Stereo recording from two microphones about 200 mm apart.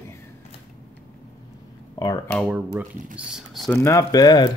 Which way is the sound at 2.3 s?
5° right (ahead or behind).